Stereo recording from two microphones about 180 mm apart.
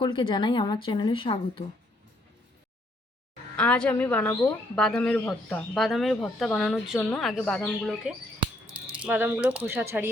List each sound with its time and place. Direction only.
0.0 s speech: 25° left (ahead or behind)
3.6 s speech: 5° left (ahead or behind)
9.0 s speech: 10° right (ahead or behind)